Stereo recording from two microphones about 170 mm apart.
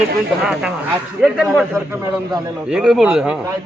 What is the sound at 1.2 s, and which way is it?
Speech, centre (ahead or behind).